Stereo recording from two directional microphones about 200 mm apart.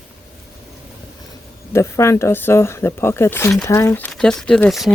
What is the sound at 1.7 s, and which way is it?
Speech, 15° left (ahead or behind).